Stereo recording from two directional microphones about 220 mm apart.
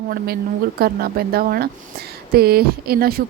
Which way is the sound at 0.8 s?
45° right (ahead or behind).